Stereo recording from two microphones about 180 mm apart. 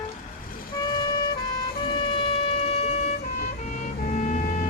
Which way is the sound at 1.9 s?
30° left (ahead or behind).